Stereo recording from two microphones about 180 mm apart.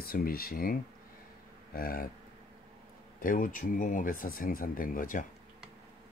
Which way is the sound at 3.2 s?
50° left (ahead or behind).